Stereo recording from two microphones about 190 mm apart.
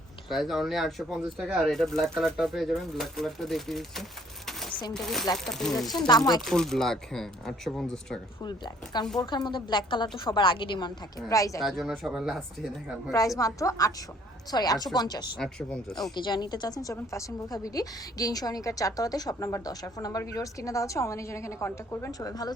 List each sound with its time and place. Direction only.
0.3 s speech: centre (ahead or behind)
4.4 s a sound: centre (ahead or behind)
5.5 s speech: centre (ahead or behind)
6.1 s a woman's voice: 20° left (ahead or behind)
6.4 s speech: centre (ahead or behind)
8.4 s a woman's voice: 20° left (ahead or behind)
11.6 s speech: centre (ahead or behind)
13.1 s a woman's voice: 15° left (ahead or behind)
15.4 s speech: 5° left (ahead or behind)
16.1 s a woman's voice: 25° left (ahead or behind)